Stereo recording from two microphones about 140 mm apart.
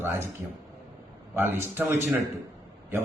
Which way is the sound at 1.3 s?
15° right (ahead or behind).